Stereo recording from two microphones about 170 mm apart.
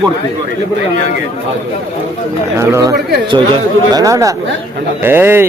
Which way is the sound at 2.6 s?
15° right (ahead or behind).